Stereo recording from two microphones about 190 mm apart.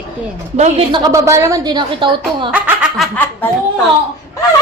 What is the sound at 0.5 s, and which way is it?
A woman's voice, 35° right (ahead or behind).